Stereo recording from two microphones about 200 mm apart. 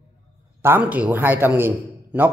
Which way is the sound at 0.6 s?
10° right (ahead or behind).